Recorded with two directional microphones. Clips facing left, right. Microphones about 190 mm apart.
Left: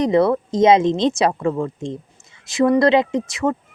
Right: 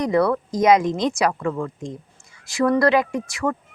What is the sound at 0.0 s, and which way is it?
Speech, 25° left (ahead or behind).